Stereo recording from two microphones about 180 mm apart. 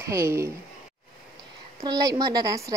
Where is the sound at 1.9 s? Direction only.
20° right (ahead or behind).